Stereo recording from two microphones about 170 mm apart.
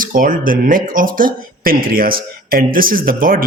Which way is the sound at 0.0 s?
50° right (ahead or behind).